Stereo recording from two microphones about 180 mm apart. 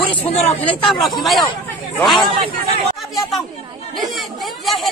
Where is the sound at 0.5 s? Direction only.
10° left (ahead or behind).